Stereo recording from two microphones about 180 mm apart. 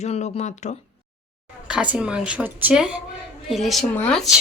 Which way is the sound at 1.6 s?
5° right (ahead or behind).